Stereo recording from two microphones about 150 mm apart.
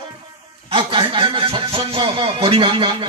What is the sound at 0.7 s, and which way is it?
Speech, 35° right (ahead or behind).